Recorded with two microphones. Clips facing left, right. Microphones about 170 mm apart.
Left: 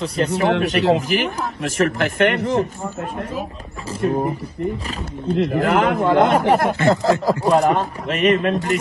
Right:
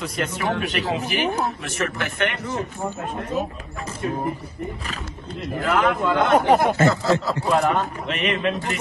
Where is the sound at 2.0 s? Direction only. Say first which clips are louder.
Left 8 dB; 55° left (ahead or behind).